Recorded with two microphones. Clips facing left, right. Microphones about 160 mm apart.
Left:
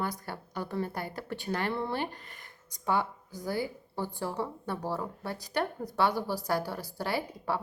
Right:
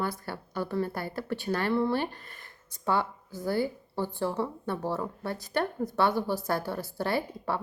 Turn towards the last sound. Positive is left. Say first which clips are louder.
# right 2 dB
turn(degrees=10)  # may be behind; listen again after turning